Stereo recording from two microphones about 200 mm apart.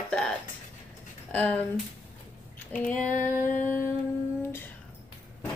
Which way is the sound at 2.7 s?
5° left (ahead or behind).